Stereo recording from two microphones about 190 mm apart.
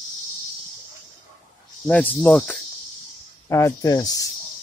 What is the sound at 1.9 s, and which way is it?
Speech, 5° left (ahead or behind).